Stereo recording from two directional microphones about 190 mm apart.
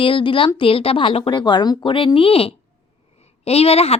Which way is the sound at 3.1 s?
35° left (ahead or behind).